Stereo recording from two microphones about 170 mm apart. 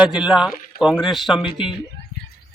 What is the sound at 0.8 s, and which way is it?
Speech, 5° right (ahead or behind).